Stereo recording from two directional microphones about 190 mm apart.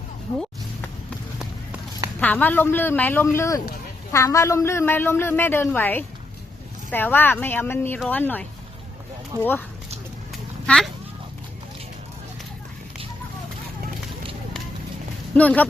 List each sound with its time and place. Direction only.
2.2 s a woman's voice: 10° left (ahead or behind)
10.7 s speech: 5° left (ahead or behind)
15.4 s a woman's voice: 10° left (ahead or behind)